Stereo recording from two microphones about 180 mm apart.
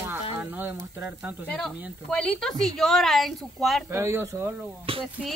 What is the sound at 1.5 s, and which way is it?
Speech, 5° left (ahead or behind).